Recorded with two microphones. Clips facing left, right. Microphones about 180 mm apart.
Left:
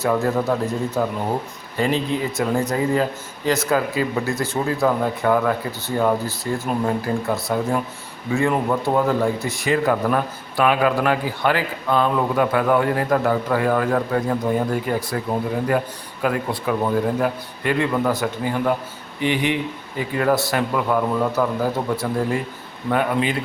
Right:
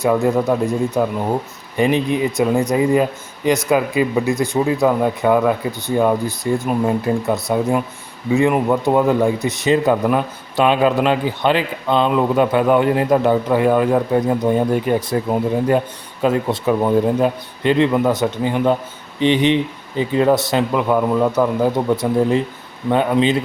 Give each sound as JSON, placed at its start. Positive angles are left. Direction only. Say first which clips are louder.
{"t": 0.0, "sound": "a man's voice", "louder": "right 4 dB", "side_deg": -15}
{"t": 16.2, "sound": "speech", "louder": "right 5 dB", "side_deg": -25}